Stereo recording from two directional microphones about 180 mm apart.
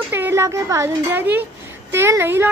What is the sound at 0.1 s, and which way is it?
A woman's voice, 15° right (ahead or behind).